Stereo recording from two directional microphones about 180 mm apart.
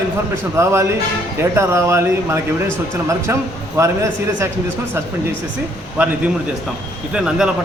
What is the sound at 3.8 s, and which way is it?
Speech, 15° right (ahead or behind).